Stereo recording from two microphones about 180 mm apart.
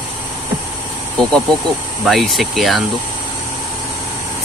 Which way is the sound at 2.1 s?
Centre (ahead or behind).